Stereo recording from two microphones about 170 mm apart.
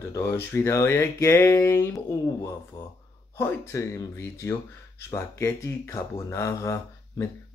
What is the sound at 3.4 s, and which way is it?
Speech, 15° left (ahead or behind).